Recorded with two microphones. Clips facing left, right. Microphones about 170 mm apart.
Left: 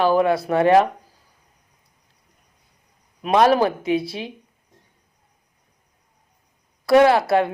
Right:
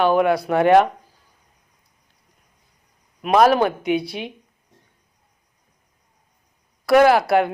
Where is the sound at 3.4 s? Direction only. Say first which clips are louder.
Even; 30° left (ahead or behind).